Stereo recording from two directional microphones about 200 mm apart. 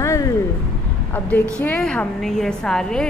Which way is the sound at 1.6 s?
5° left (ahead or behind).